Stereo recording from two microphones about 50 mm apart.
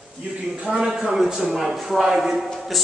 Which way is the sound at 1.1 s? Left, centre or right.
Centre.